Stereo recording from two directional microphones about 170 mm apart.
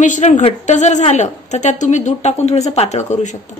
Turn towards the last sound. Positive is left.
turn(degrees=45)  # may be behind; listen again after turning